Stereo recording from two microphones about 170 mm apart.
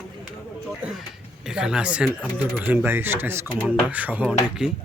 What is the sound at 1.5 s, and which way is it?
Speech, 5° right (ahead or behind).